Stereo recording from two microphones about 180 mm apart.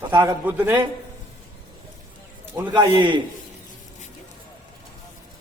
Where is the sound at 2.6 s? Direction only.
25° right (ahead or behind).